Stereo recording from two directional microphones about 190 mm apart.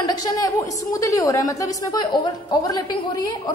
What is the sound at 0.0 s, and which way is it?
A woman's voice, 20° left (ahead or behind).